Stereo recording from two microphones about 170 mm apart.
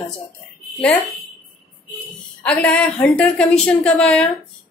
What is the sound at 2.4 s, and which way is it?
A woman's voice, 5° left (ahead or behind).